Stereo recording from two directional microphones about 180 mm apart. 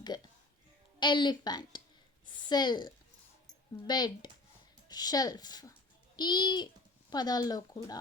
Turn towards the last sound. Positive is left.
turn(degrees=20)  # may be behind; listen again after turning